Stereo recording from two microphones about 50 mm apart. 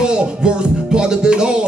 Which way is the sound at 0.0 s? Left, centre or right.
Centre.